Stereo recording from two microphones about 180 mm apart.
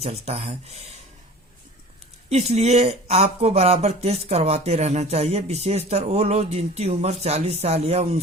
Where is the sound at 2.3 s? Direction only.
35° right (ahead or behind).